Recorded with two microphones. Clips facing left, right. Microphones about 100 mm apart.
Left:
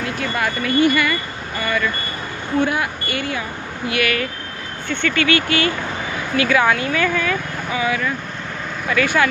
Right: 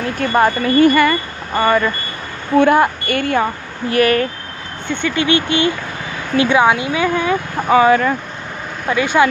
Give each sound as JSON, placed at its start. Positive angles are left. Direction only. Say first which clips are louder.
{"t": 0.0, "sound": "speech", "louder": "right 7 dB", "side_deg": -40}
{"t": 3.9, "sound": "speech", "louder": "right 7 dB", "side_deg": -40}
{"t": 4.8, "sound": "speech", "louder": "right 2 dB", "side_deg": -15}
{"t": 7.5, "sound": "speech", "louder": "right 10 dB", "side_deg": -45}
{"t": 8.8, "sound": "speech", "louder": "right 4 dB", "side_deg": -20}